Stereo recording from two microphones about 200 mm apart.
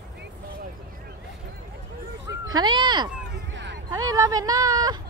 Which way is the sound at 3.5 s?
65° right (ahead or behind).